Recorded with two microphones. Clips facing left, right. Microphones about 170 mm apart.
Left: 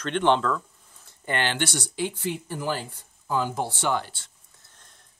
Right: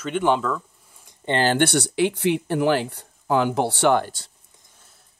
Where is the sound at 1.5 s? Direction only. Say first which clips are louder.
Right 9 dB; 65° right (ahead or behind).